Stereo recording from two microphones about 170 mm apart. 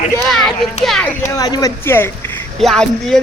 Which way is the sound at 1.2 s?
20° left (ahead or behind).